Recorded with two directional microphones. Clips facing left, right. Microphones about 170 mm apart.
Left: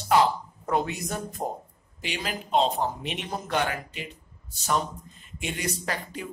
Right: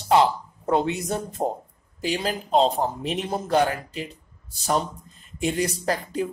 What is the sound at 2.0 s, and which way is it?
Speech, 35° right (ahead or behind).